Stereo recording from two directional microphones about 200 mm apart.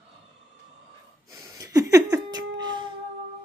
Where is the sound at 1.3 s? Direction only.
15° right (ahead or behind).